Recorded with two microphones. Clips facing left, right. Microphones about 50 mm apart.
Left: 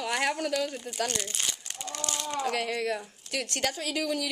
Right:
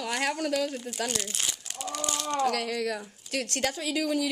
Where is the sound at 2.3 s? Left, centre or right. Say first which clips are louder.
Right 2 dB; centre.